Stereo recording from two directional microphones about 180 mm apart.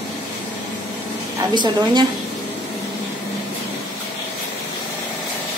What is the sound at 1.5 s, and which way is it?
Speech, 25° right (ahead or behind).